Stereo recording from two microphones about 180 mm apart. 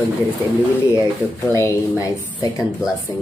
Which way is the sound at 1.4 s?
15° left (ahead or behind).